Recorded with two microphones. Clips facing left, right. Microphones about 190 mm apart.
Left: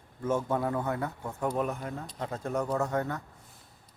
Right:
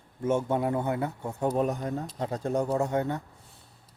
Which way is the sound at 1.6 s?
40° right (ahead or behind).